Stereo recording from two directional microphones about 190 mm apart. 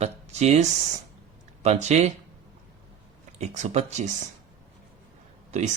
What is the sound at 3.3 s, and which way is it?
Speech, 35° right (ahead or behind).